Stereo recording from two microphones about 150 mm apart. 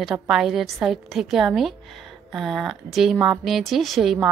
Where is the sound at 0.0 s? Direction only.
Centre (ahead or behind).